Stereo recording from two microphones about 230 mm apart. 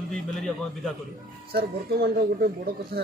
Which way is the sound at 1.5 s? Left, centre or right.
Right.